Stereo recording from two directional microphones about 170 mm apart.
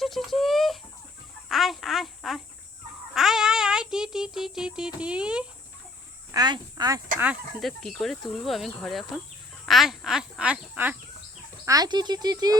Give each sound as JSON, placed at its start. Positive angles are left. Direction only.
{"t": 0.0, "sound": "a sound", "side_deg": 0}
{"t": 1.5, "sound": "insect", "side_deg": 0}
{"t": 3.2, "sound": "music", "side_deg": 0}
{"t": 6.3, "sound": "speech", "side_deg": -25}
{"t": 7.6, "sound": "speech", "side_deg": 0}
{"t": 11.6, "sound": "speech", "side_deg": -20}